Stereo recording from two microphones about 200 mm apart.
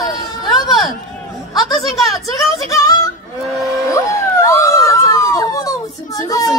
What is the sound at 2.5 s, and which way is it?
Female singing, 15° left (ahead or behind).